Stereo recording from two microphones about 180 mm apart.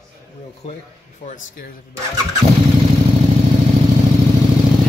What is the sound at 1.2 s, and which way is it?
Speech, 45° left (ahead or behind).